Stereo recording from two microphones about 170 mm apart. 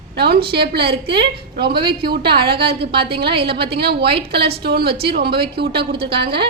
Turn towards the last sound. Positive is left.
turn(degrees=-70)  # may be behind; listen again after turning